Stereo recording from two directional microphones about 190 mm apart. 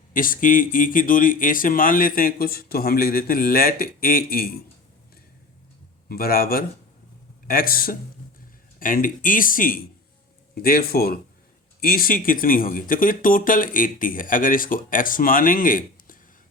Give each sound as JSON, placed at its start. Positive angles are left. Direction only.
{"t": 0.1, "sound": "speech", "side_deg": 45}
{"t": 6.1, "sound": "speech", "side_deg": 50}